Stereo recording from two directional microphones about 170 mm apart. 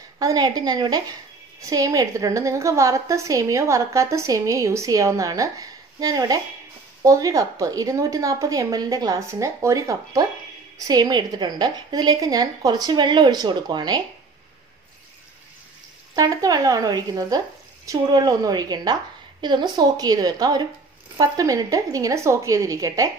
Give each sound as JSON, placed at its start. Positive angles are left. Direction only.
{"t": 0.2, "sound": "a woman's voice", "side_deg": -20}
{"t": 16.2, "sound": "a woman's voice", "side_deg": -20}